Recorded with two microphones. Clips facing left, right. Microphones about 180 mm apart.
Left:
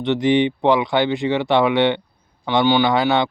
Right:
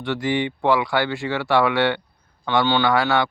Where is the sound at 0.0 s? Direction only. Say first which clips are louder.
Left 6 dB; 20° left (ahead or behind).